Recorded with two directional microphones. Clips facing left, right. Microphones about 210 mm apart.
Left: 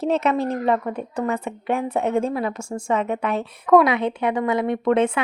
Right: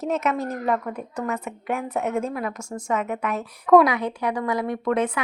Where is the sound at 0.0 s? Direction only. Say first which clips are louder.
Left 4 dB; 30° left (ahead or behind).